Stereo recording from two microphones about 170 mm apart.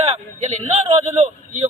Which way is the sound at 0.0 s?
40° right (ahead or behind).